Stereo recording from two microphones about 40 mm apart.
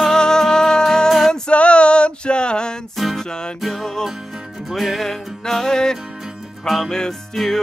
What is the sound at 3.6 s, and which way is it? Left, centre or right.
Music, centre.